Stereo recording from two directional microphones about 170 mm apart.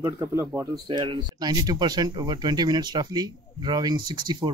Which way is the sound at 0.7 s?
30° right (ahead or behind).